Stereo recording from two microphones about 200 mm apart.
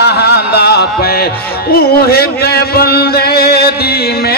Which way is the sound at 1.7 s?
50° left (ahead or behind).